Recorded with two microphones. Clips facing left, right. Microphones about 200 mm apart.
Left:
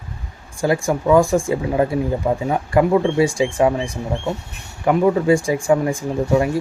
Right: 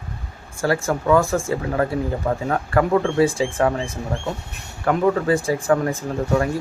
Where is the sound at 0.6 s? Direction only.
15° left (ahead or behind).